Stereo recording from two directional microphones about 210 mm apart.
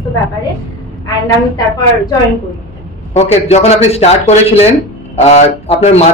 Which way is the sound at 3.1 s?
30° left (ahead or behind).